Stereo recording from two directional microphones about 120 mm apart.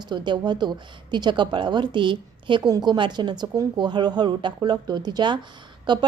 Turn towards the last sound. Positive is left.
turn(degrees=-40)  # may be behind; listen again after turning